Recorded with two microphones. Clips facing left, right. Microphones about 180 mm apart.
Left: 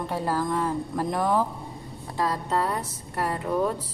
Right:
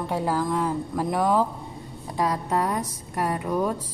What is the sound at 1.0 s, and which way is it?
Speech, 10° right (ahead or behind).